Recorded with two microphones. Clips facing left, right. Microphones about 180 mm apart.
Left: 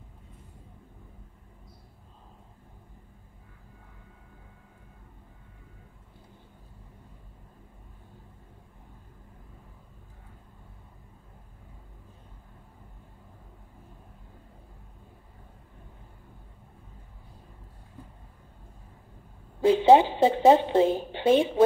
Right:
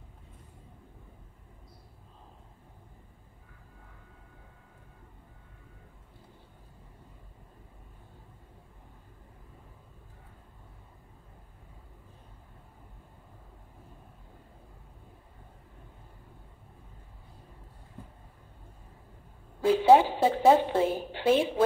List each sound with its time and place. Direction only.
19.6 s a woman's voice: 20° left (ahead or behind)